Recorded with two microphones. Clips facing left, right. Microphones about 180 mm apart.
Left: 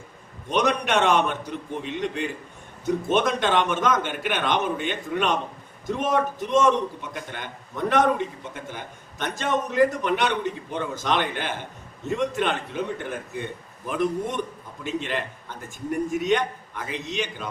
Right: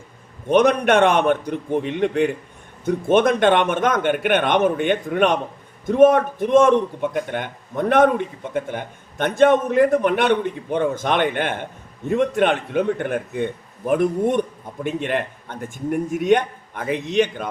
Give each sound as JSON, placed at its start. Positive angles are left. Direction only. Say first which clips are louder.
{"t": 0.4, "sound": "a man's voice", "louder": "right 8 dB", "side_deg": -55}